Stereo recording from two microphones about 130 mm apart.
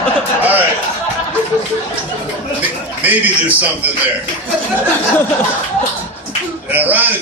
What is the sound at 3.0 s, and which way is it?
Speech, 15° right (ahead or behind).